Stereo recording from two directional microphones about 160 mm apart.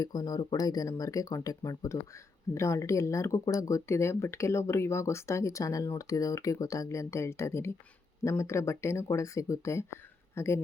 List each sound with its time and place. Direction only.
0.0 s speech: 25° left (ahead or behind)